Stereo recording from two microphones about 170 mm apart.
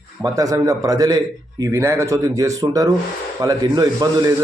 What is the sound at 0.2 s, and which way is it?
A man's voice, 20° right (ahead or behind).